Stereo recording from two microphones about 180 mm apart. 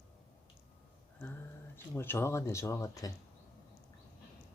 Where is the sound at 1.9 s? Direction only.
15° left (ahead or behind).